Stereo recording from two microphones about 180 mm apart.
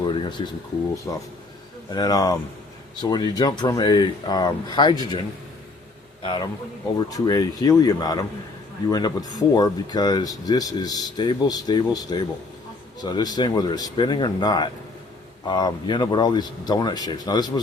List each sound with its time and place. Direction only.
0.0 s a sound: 25° left (ahead or behind)
1.1 s speech: 20° left (ahead or behind)
6.2 s speech: 25° left (ahead or behind)